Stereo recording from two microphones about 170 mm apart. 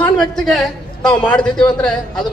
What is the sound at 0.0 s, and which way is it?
A man's voice, 5° left (ahead or behind).